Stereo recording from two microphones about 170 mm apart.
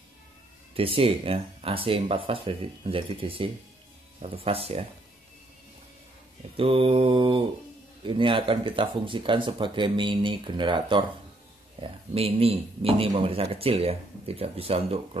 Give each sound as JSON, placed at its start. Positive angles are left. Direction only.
{"t": 0.7, "sound": "speech", "side_deg": -35}
{"t": 6.5, "sound": "speech", "side_deg": -35}
{"t": 12.1, "sound": "speech", "side_deg": -35}